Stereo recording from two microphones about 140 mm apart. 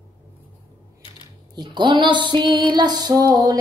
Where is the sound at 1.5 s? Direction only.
30° right (ahead or behind).